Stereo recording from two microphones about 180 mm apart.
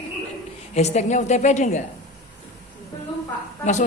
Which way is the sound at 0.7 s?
40° left (ahead or behind).